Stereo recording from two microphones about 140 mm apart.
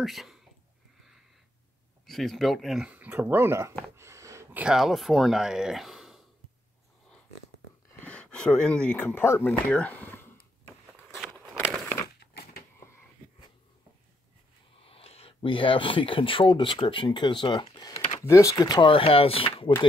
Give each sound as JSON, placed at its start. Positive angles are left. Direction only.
{"t": 0.0, "sound": "speech", "side_deg": 0}
{"t": 2.0, "sound": "speech", "side_deg": 0}
{"t": 3.9, "sound": "a sound", "side_deg": -20}
{"t": 4.6, "sound": "speech", "side_deg": 0}
{"t": 8.0, "sound": "speech", "side_deg": 10}
{"t": 9.5, "sound": "speech", "side_deg": 5}
{"t": 14.8, "sound": "speech", "side_deg": 45}
{"t": 17.9, "sound": "a sound", "side_deg": 45}
{"t": 18.2, "sound": "speech", "side_deg": 20}